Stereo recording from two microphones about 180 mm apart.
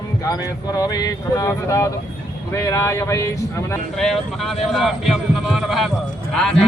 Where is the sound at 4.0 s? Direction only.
Centre (ahead or behind).